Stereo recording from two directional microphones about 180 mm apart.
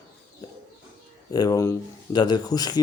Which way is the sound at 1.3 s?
20° left (ahead or behind).